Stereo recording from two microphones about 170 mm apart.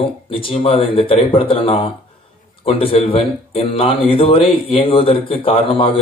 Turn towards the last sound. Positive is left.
turn(degrees=30)  # may be behind; listen again after turning